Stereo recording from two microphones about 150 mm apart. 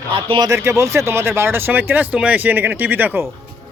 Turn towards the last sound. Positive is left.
turn(degrees=-15)  # may be behind; listen again after turning